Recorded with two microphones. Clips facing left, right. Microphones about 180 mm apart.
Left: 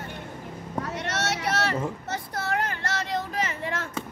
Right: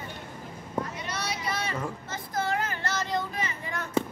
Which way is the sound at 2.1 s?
70° left (ahead or behind).